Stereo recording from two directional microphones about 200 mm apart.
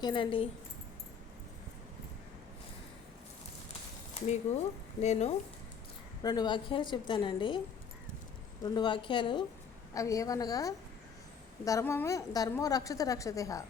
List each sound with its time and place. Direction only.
0.0 s a woman's voice: 25° left (ahead or behind)
4.2 s speech: 30° left (ahead or behind)
6.2 s a woman's voice: 20° left (ahead or behind)
8.6 s a woman's voice: 20° left (ahead or behind)